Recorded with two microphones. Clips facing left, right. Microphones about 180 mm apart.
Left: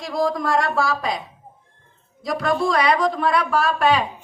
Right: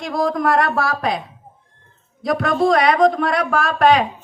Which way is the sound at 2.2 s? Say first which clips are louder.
Right 4 dB; 50° right (ahead or behind).